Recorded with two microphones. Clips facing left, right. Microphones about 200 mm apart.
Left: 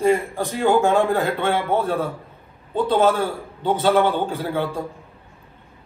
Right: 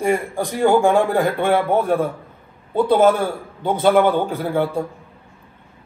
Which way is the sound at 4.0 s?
45° right (ahead or behind).